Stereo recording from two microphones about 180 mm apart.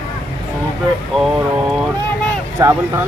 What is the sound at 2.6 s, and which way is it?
Speech, 15° right (ahead or behind).